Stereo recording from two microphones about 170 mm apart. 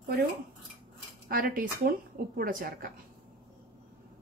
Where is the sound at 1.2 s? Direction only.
60° right (ahead or behind).